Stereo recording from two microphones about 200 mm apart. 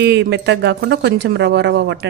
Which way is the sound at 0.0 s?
60° right (ahead or behind).